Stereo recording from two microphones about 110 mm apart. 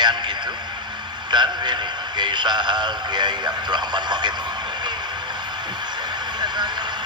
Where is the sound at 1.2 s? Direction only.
45° right (ahead or behind).